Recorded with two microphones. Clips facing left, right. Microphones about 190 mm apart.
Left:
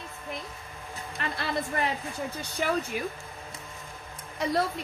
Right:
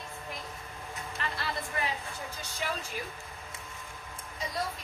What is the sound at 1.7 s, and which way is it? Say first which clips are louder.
Speech: left 4 dB; 45° left (ahead or behind).